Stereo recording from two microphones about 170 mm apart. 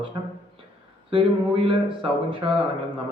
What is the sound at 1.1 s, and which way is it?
Speech, 30° right (ahead or behind).